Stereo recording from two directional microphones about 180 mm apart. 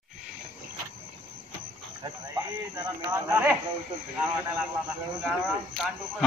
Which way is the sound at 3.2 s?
10° right (ahead or behind).